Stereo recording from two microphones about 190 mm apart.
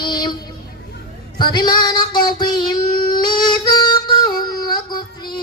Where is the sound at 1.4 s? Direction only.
25° left (ahead or behind).